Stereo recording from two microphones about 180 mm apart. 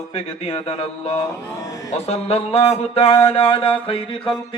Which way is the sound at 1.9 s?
35° left (ahead or behind).